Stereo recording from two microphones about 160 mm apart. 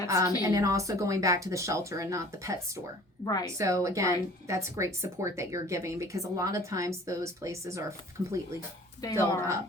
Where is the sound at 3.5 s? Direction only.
20° right (ahead or behind).